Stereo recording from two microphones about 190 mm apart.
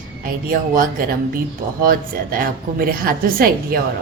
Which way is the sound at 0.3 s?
45° right (ahead or behind).